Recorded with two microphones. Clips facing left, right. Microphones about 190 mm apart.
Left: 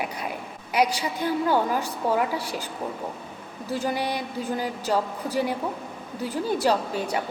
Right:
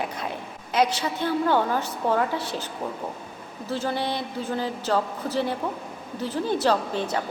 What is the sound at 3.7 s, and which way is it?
A woman's voice, 15° left (ahead or behind).